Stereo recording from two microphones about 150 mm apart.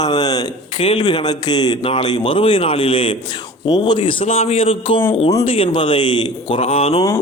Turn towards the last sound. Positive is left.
turn(degrees=40)  # may be behind; listen again after turning